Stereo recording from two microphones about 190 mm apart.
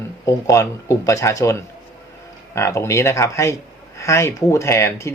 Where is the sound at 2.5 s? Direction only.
15° left (ahead or behind).